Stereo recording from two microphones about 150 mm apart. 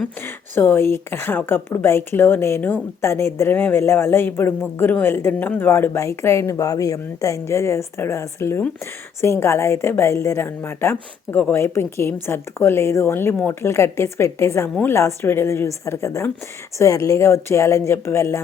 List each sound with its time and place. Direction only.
0.5 s a woman's voice: 15° left (ahead or behind)